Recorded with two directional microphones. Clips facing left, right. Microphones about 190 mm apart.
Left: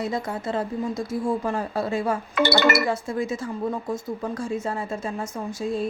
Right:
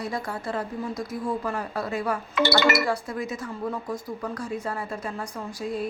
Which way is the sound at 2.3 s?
50° left (ahead or behind).